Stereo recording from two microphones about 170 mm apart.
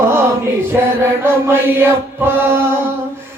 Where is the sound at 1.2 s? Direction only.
15° right (ahead or behind).